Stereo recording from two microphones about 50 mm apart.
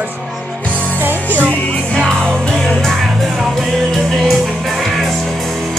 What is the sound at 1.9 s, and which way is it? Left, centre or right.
Music, centre.